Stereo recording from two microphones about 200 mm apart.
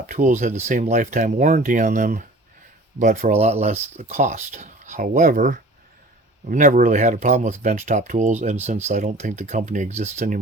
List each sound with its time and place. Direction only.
0.1 s speech: 40° right (ahead or behind)